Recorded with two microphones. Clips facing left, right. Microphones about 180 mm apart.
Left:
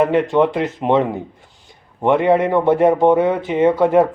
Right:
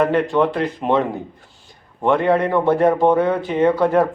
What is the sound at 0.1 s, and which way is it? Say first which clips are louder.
Speech: left 2 dB; 20° left (ahead or behind).